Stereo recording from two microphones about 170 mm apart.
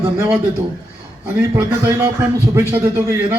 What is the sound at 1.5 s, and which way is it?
A man's voice, 15° right (ahead or behind).